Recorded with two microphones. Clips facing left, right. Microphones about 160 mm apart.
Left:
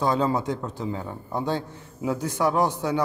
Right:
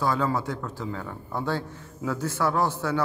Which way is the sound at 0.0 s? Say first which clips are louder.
Left 2 dB; 20° left (ahead or behind).